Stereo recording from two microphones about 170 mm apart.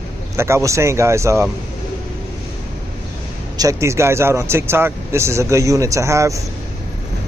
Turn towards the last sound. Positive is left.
turn(degrees=-15)  # may be behind; listen again after turning